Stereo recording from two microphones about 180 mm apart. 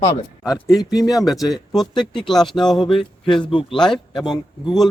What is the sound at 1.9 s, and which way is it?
Speech, 25° left (ahead or behind).